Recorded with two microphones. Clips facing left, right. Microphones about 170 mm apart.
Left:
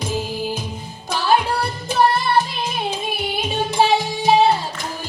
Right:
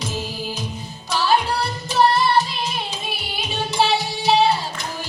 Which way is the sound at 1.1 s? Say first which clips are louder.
Left 1 dB; 50° left (ahead or behind).